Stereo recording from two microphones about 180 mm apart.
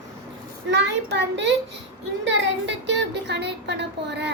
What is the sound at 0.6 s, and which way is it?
A child's voice, 80° right.